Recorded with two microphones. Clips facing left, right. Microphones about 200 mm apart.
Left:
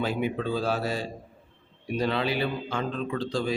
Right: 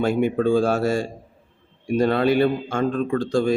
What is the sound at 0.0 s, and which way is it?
Speech, 50° right (ahead or behind).